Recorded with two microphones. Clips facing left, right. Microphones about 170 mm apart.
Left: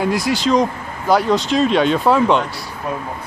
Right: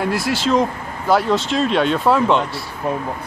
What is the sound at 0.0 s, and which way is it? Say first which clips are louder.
Speech: left 2 dB; centre (ahead or behind).